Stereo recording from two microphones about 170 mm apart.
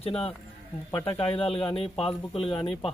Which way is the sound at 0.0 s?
35° left (ahead or behind).